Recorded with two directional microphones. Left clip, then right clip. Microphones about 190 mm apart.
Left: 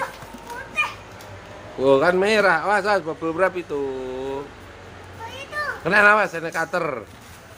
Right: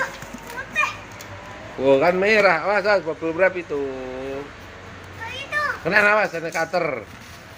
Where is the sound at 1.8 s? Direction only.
15° left (ahead or behind).